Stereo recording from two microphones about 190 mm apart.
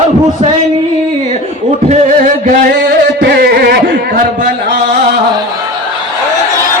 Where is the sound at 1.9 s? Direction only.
40° right (ahead or behind).